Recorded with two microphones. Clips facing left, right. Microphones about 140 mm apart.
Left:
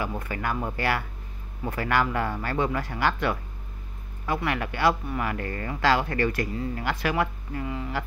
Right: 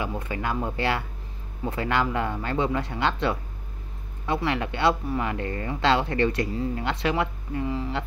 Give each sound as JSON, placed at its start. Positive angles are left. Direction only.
{"t": 0.2, "sound": "speech", "side_deg": -20}